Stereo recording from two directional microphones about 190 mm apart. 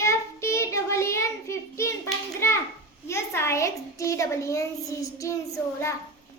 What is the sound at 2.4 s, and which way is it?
Hands, 15° left (ahead or behind).